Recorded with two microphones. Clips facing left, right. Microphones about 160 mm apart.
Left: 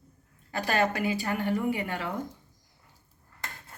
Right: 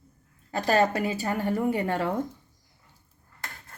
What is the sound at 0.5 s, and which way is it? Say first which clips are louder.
A woman's voice: right 4 dB; 35° right (ahead or behind).